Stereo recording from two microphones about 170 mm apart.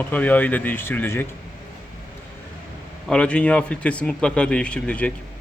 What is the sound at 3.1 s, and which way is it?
Speech, 5° left (ahead or behind).